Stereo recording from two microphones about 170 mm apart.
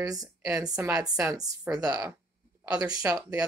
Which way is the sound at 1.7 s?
10° right (ahead or behind).